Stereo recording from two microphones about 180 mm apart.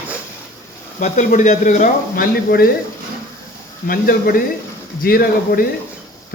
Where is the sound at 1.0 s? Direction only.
45° left (ahead or behind); by 2.7 s 60° left (ahead or behind).